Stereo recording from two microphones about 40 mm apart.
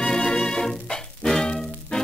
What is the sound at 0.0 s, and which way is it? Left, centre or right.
Music, centre.